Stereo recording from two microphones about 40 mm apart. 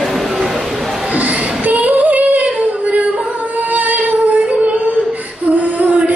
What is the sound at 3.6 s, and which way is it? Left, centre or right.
Music, right.